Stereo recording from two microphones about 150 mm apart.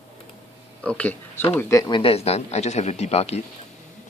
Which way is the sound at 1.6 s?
20° left (ahead or behind).